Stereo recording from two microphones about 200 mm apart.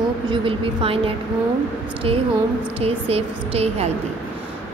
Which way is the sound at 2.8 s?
30° right (ahead or behind).